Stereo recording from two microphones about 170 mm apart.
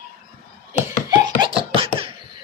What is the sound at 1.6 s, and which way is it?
Laughter, 30° right (ahead or behind).